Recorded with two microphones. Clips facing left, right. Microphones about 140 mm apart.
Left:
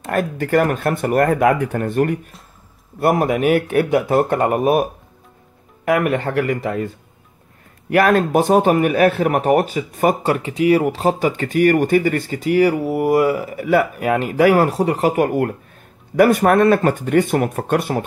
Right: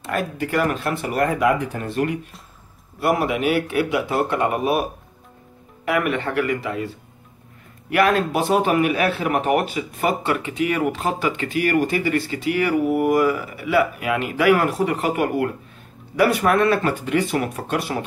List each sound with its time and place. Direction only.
0.0 s speech: 50° left (ahead or behind)
5.9 s speech: 40° left (ahead or behind)
7.9 s speech: 45° left (ahead or behind)